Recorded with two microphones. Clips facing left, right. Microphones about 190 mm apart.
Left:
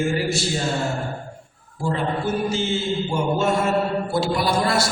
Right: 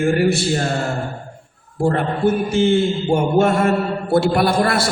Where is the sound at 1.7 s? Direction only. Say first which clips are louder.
Right 5 dB; 60° right (ahead or behind).